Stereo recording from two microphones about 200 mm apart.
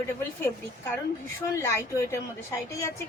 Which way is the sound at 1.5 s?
15° left (ahead or behind).